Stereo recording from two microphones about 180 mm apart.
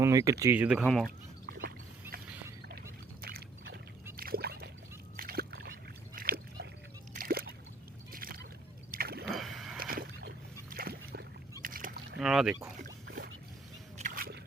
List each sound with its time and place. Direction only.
0.0 s speech: 20° right (ahead or behind); by 1.1 s centre (ahead or behind)
1.5 s a sound: 55° right (ahead or behind)
5.1 s dog: 55° right (ahead or behind)
6.1 s boat: 55° right (ahead or behind)
7.1 s a sound: 55° right (ahead or behind)
8.1 s boat: 55° right (ahead or behind)
8.9 s a sound: 60° right (ahead or behind)
9.3 s boat: centre (ahead or behind)
9.7 s boat: 55° right (ahead or behind)
11.6 s rowboat: 50° right (ahead or behind)
12.2 s speech: centre (ahead or behind)
12.8 s a sound: 60° right (ahead or behind)